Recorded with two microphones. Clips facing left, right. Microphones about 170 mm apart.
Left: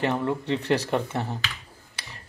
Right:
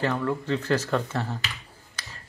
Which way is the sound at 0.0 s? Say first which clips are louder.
Left 1 dB; 20° left (ahead or behind).